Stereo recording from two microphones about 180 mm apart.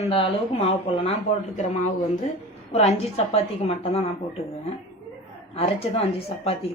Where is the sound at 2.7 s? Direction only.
35° left (ahead or behind).